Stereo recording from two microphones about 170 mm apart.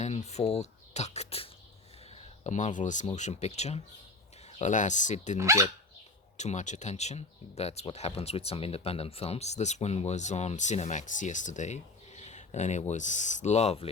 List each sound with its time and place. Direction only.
0.0 s speech: 40° left (ahead or behind)
5.4 s speech: 15° right (ahead or behind)
6.3 s speech: 45° left (ahead or behind)